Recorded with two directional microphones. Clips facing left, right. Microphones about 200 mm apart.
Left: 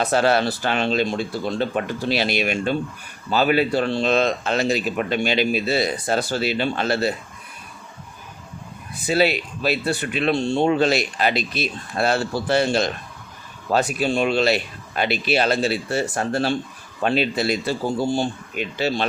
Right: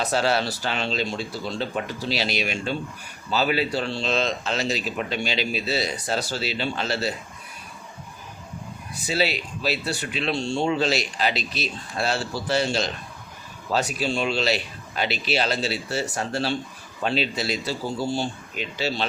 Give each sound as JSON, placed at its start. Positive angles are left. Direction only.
{"t": 0.0, "sound": "speech", "side_deg": 55}
{"t": 9.0, "sound": "speech", "side_deg": 55}